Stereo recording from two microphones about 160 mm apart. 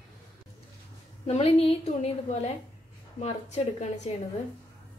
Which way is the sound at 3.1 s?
45° left (ahead or behind).